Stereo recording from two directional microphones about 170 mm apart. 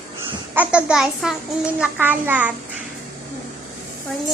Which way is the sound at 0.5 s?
10° right (ahead or behind).